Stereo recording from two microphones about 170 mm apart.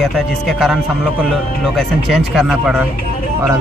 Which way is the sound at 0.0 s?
Centre (ahead or behind).